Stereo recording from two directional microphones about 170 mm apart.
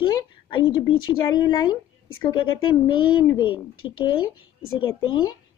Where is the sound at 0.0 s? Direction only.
25° left (ahead or behind).